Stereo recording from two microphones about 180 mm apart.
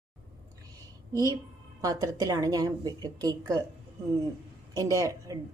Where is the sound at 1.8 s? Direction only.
20° right (ahead or behind).